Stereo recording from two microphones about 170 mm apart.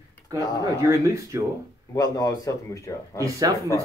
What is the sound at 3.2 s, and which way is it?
Speech, 20° right (ahead or behind).